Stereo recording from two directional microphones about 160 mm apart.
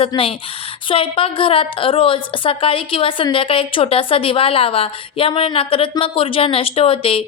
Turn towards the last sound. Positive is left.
turn(degrees=35)  # may be behind; listen again after turning